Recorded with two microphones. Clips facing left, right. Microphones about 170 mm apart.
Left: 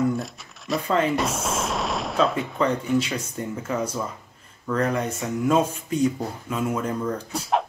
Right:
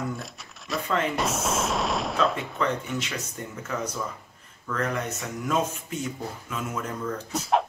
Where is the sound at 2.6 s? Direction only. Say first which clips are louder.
Left 7 dB; 30° left (ahead or behind).